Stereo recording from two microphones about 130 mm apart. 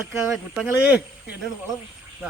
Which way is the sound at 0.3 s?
5° right (ahead or behind).